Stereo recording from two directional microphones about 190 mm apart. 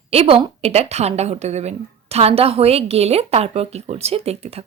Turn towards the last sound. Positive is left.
turn(degrees=-30)  # may be behind; listen again after turning